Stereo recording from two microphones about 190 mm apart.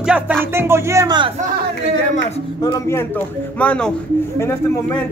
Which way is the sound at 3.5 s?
5° left (ahead or behind).